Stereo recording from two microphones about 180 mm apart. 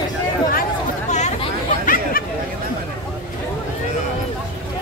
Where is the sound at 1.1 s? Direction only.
40° left (ahead or behind).